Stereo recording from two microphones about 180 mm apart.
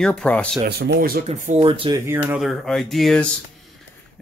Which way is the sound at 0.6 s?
65° right (ahead or behind).